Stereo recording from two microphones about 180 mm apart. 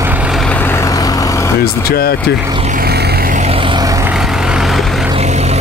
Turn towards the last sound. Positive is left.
turn(degrees=-25)  # may be behind; listen again after turning